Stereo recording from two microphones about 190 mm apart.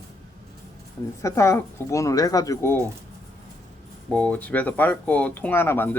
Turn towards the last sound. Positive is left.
turn(degrees=10)  # may be behind; listen again after turning